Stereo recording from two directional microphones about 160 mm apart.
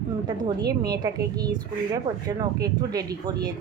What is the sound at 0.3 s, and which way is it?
Speech, 30° right (ahead or behind).